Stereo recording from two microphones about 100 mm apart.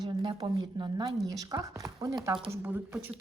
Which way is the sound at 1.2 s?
40° right (ahead or behind).